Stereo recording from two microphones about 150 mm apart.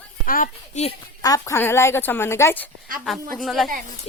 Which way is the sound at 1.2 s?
20° left (ahead or behind).